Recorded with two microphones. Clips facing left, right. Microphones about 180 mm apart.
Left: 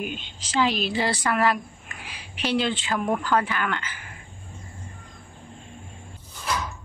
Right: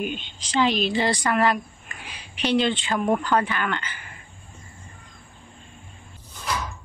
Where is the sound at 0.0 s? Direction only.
5° left (ahead or behind).